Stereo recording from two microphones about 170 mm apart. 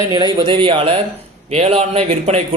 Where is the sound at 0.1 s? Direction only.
25° right (ahead or behind).